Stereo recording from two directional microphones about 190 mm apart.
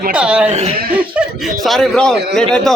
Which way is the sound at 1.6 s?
Centre (ahead or behind).